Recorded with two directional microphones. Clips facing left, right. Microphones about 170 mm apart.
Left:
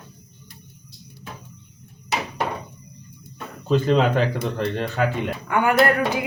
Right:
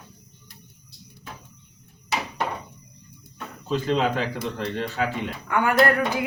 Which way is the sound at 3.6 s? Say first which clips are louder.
Left 4 dB; 55° left (ahead or behind).